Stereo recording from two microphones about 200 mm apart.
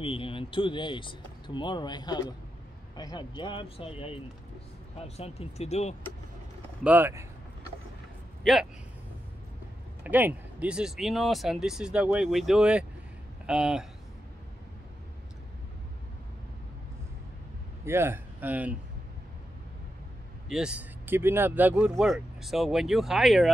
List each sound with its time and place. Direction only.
0.0 s speech: 25° left (ahead or behind)
6.8 s speech: 10° right (ahead or behind)
10.0 s speech: 10° right (ahead or behind)
17.8 s a man's voice: 10° right (ahead or behind)
20.4 s speech: 5° right (ahead or behind)